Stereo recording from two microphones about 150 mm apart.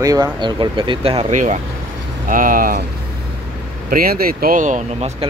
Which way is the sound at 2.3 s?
65° right (ahead or behind).